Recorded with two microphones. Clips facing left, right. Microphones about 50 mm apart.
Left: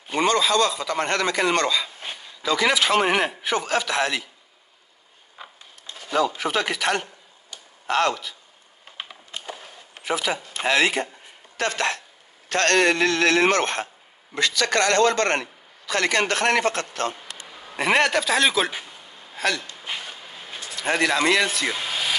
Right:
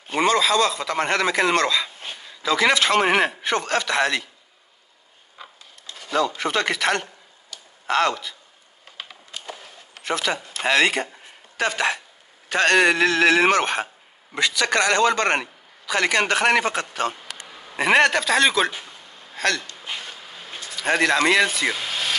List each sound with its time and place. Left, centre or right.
0.1 s a man's voice: centre
5.4 s printer: centre
5.9 s a man's voice: centre
10.0 s a man's voice: centre
11.1 s a sound: centre
12.4 s a man's voice: centre
18.7 s a sound: centre
19.8 s vehicle: centre
20.7 s a man's voice: centre
21.7 s a sound: centre